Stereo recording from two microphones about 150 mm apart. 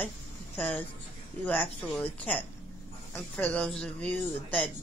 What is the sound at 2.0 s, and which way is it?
A woman's voice, 10° left (ahead or behind).